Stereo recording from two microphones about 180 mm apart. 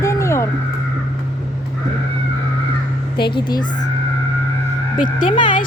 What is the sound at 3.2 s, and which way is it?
Speech, 25° left (ahead or behind).